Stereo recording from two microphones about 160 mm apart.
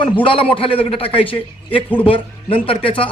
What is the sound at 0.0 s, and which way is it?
Speech, 35° left (ahead or behind).